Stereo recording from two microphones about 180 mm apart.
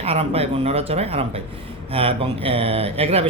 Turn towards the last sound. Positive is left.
turn(degrees=-35)  # may be behind; listen again after turning